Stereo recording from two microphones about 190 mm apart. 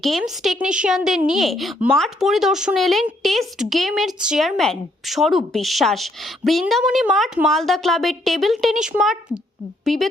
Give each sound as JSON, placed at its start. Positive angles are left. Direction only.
{"t": 0.0, "sound": "a woman's voice", "side_deg": 0}